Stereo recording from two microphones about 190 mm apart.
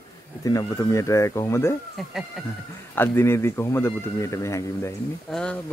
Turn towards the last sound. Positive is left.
turn(degrees=5)  # may be behind; listen again after turning